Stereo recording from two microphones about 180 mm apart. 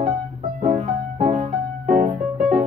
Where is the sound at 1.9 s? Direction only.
50° right (ahead or behind).